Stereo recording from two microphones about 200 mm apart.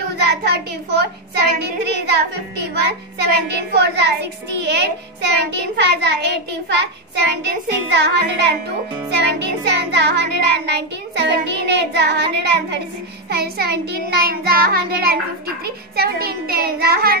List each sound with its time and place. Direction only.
0.1 s a child's voice: 55° right (ahead or behind)
13.3 s child singing: 50° right (ahead or behind)